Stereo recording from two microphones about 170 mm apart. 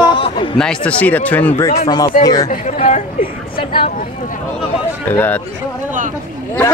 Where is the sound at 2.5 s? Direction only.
45° left (ahead or behind).